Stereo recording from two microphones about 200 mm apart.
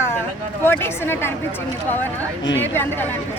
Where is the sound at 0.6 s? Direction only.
10° left (ahead or behind).